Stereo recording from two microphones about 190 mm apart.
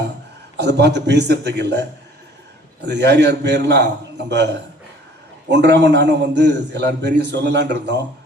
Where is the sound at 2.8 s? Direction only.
65° right (ahead or behind).